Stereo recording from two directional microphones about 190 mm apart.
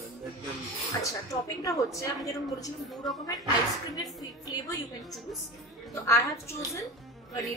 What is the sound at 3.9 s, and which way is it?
Speech, 20° left (ahead or behind).